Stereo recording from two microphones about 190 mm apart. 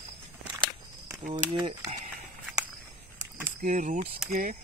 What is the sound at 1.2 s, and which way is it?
Speech, 40° right (ahead or behind).